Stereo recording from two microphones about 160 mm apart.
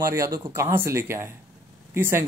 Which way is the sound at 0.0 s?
20° right (ahead or behind).